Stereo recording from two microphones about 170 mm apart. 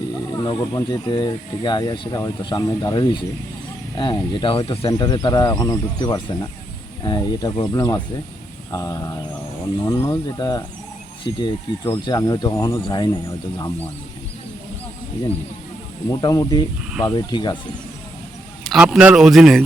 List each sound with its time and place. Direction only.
0.3 s speech: 25° left (ahead or behind)
16.0 s speech: 20° left (ahead or behind)
18.6 s speech: centre (ahead or behind)